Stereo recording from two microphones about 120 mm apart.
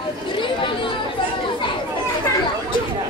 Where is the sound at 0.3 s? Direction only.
45° left (ahead or behind).